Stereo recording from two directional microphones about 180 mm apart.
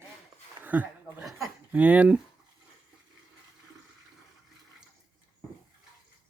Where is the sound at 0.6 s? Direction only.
10° right (ahead or behind).